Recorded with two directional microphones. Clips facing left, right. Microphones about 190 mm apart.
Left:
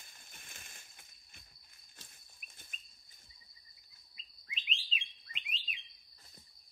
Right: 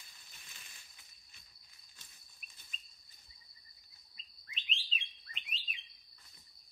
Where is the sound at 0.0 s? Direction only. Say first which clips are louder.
Left 3 dB; 50° left (ahead or behind).